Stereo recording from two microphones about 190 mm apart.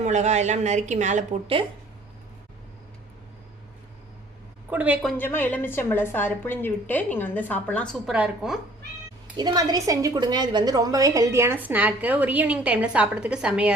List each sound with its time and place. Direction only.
0.0 s a woman's voice: 40° right (ahead or behind)
4.7 s a woman's voice: 10° right (ahead or behind)
5.1 s a woman's voice: 10° left (ahead or behind)
8.1 s a woman's voice: 5° right (ahead or behind)
9.4 s a woman's voice: 20° right (ahead or behind); by 13.7 s 5° right (ahead or behind)